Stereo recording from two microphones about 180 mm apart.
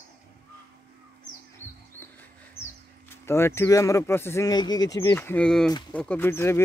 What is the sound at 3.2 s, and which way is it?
Speech, 15° left (ahead or behind).